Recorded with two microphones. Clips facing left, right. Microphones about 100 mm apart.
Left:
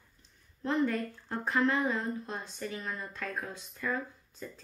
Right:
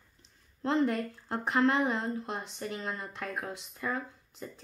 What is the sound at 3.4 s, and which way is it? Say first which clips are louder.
Speech: right 1 dB; 80° right.